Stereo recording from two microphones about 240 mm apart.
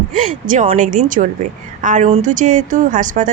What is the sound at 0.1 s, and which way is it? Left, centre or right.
Speech, right.